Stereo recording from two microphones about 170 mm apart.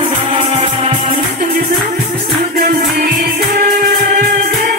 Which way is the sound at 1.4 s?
55° right (ahead or behind).